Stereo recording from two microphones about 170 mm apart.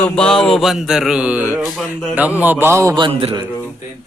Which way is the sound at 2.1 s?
10° right (ahead or behind).